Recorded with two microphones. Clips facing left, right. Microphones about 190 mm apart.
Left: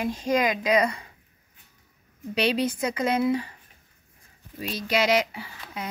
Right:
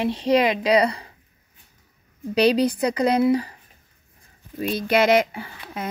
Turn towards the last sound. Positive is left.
turn(degrees=-50)  # may be behind; listen again after turning